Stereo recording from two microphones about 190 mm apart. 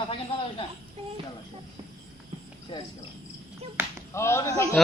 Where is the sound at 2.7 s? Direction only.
25° left (ahead or behind).